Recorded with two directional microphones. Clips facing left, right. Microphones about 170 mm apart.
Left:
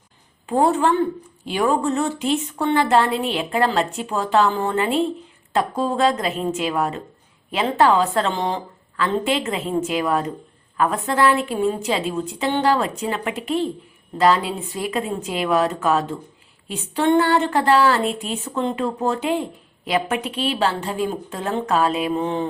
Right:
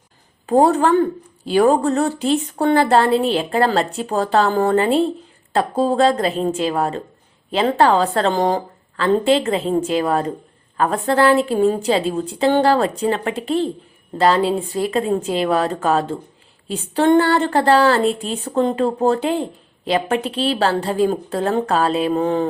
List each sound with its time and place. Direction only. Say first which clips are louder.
0.4 s speech: right 4 dB; 40° right (ahead or behind)